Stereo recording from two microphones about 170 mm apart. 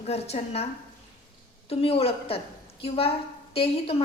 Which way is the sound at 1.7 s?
35° left (ahead or behind).